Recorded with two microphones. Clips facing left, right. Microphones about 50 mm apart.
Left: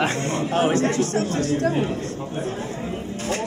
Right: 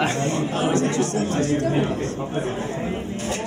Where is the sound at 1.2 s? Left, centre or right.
Right.